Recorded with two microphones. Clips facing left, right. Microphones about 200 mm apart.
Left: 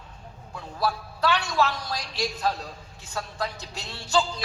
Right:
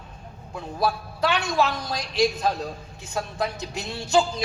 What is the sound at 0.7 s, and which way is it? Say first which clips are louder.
A man's voice: right 3 dB; 20° right (ahead or behind).